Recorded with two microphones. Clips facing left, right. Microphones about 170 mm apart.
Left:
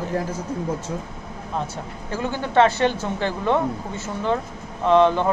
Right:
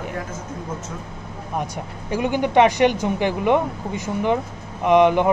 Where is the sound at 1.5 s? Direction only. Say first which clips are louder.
Right 1 dB; 15° right (ahead or behind).